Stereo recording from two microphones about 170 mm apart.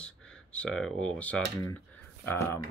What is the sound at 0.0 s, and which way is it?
Speech, 5° left (ahead or behind).